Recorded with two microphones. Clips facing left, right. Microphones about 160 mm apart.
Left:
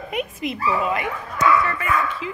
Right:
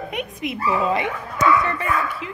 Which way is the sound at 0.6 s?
25° right (ahead or behind).